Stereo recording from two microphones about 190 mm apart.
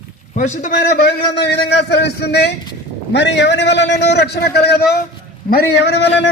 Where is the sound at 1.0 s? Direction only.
60° left (ahead or behind).